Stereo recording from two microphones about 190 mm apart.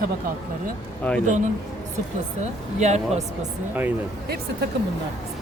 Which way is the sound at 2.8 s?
35° right (ahead or behind).